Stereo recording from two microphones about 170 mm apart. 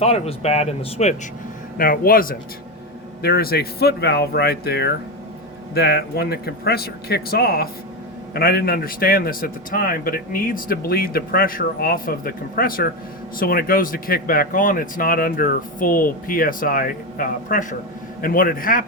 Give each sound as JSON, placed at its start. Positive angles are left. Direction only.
{"t": 0.0, "sound": "speech", "side_deg": 35}
{"t": 1.8, "sound": "a man's voice", "side_deg": 60}